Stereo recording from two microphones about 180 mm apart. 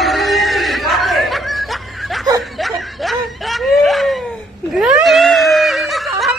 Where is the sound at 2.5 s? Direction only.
Centre (ahead or behind).